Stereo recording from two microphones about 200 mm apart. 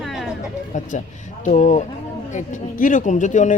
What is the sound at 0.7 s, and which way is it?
A man's voice, 40° left (ahead or behind).